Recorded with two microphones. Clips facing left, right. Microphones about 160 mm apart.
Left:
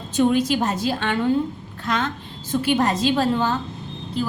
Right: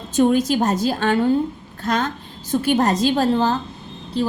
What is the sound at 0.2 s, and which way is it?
A woman's voice, 45° right (ahead or behind).